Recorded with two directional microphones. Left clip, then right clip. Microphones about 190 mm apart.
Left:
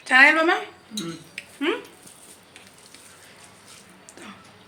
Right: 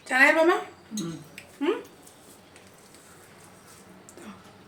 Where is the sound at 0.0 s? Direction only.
Centre (ahead or behind).